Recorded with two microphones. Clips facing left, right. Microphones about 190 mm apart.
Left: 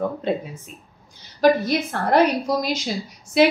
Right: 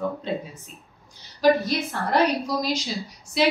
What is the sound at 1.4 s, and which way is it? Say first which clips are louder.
A woman's voice: left 2 dB; 55° left (ahead or behind).